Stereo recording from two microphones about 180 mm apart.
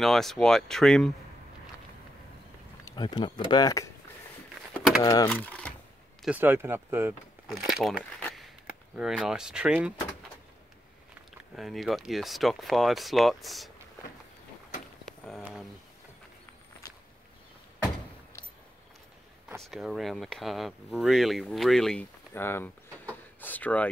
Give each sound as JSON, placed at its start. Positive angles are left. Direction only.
{"t": 0.0, "sound": "speech", "side_deg": 0}
{"t": 2.8, "sound": "speech", "side_deg": 25}
{"t": 4.7, "sound": "a sound", "side_deg": 0}
{"t": 5.0, "sound": "speech", "side_deg": 20}
{"t": 5.3, "sound": "typing", "side_deg": 5}
{"t": 6.2, "sound": "speech", "side_deg": -10}
{"t": 7.4, "sound": "speech", "side_deg": 0}
{"t": 8.0, "sound": "a sound", "side_deg": 5}
{"t": 8.9, "sound": "speech", "side_deg": -5}
{"t": 11.5, "sound": "speech", "side_deg": 0}
{"t": 15.0, "sound": "a sound", "side_deg": 0}
{"t": 19.6, "sound": "speech", "side_deg": 0}